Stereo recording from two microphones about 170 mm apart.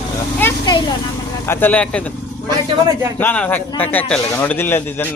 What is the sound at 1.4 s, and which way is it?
A man's voice, 10° left (ahead or behind).